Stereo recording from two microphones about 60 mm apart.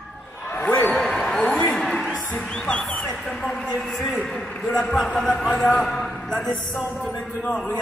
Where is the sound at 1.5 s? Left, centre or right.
Left.